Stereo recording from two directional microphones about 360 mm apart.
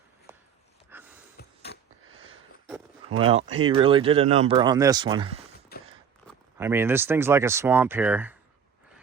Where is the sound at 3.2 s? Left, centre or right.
Centre.